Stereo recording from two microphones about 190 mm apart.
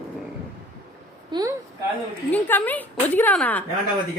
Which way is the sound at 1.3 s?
20° right (ahead or behind).